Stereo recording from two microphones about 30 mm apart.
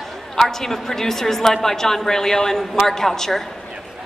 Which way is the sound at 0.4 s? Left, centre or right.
Centre.